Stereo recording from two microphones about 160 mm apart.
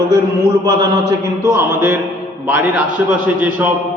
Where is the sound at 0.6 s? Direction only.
25° right (ahead or behind).